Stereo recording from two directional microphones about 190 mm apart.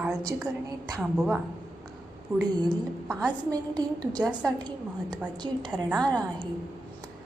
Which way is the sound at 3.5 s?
20° right (ahead or behind).